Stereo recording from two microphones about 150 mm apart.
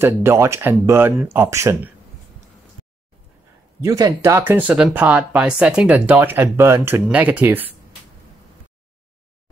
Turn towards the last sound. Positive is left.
turn(degrees=-10)  # may be behind; listen again after turning